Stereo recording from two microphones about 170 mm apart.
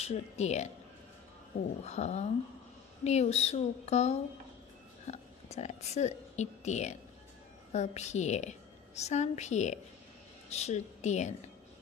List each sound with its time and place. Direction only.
0.0 s speech: 40° left (ahead or behind)
1.9 s a woman's voice: 40° left (ahead or behind)